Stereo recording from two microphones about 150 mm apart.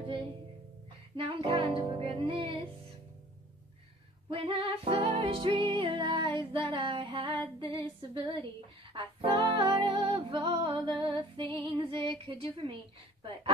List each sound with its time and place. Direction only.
1.1 s music: 40° right (ahead or behind)
4.3 s music: 40° right (ahead or behind)